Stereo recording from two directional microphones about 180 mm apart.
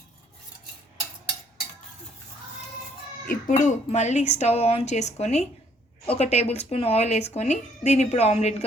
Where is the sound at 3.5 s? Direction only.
40° left (ahead or behind).